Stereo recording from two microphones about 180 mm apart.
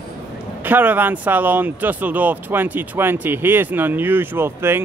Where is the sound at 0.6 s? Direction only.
10° right (ahead or behind).